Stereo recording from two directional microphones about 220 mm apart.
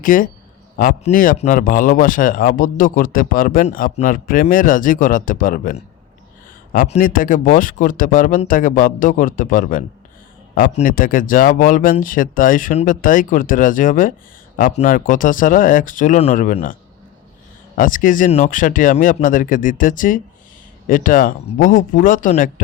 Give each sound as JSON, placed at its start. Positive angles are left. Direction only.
{"t": 0.0, "sound": "speech", "side_deg": 40}
{"t": 17.7, "sound": "speech", "side_deg": 35}